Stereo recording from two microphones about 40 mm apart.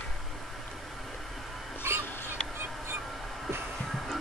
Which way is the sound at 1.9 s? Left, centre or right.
Right.